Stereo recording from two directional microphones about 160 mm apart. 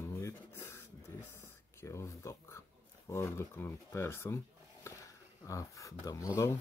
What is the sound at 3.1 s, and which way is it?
Speech, 15° left (ahead or behind).